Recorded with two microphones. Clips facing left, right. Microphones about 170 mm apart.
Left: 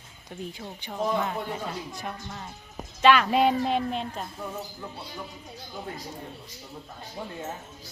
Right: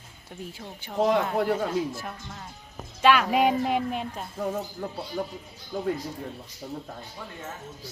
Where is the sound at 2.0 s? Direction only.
Centre (ahead or behind).